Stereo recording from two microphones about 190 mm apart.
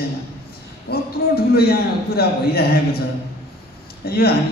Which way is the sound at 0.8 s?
55° left (ahead or behind).